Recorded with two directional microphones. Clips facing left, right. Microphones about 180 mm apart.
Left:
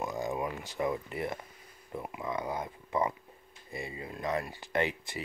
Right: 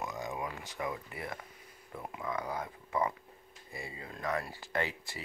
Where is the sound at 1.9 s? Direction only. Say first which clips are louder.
Left 3 dB; 20° left (ahead or behind).